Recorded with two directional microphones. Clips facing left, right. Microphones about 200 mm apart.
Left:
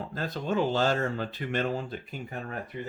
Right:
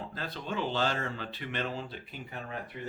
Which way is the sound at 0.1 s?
45° left (ahead or behind).